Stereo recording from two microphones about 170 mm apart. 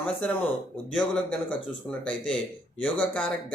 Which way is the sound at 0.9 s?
5° left (ahead or behind).